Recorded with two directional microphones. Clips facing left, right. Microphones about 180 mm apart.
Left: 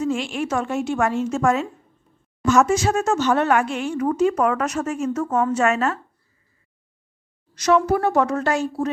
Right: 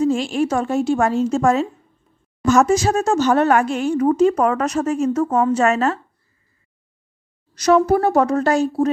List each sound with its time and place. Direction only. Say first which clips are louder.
0.0 s speech: right 5 dB; 35° right (ahead or behind)
7.5 s speech: right 3 dB; 40° right (ahead or behind)